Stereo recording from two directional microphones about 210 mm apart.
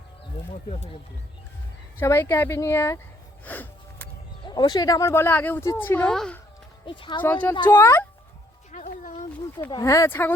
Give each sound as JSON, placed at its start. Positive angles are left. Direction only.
{"t": 2.0, "sound": "speech", "side_deg": 10}
{"t": 3.4, "sound": "music", "side_deg": 10}
{"t": 4.4, "sound": "speech", "side_deg": 20}
{"t": 6.8, "sound": "speech", "side_deg": 25}
{"t": 7.2, "sound": "speech", "side_deg": 10}
{"t": 8.7, "sound": "a sound", "side_deg": 35}
{"t": 9.7, "sound": "speech", "side_deg": 15}